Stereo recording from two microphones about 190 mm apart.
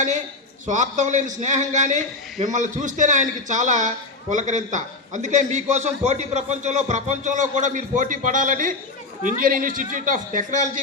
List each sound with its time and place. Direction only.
0.7 s a man's voice: 40° right (ahead or behind)